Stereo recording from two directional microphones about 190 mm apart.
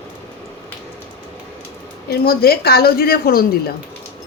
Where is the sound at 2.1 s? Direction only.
55° left (ahead or behind).